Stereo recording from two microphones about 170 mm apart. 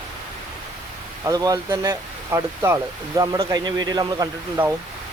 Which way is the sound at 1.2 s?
20° right (ahead or behind).